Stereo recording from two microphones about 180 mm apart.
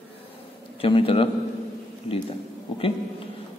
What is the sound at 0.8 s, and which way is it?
Speech, 30° left (ahead or behind).